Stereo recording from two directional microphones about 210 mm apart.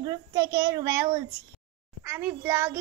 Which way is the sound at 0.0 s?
20° right (ahead or behind).